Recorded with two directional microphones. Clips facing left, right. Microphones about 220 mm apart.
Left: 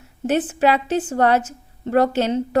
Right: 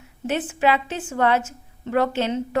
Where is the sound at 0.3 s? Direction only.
35° left (ahead or behind).